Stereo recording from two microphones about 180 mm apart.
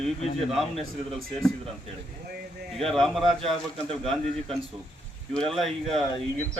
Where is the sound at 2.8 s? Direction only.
Centre (ahead or behind).